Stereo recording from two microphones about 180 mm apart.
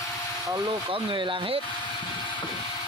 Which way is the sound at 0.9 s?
25° right (ahead or behind).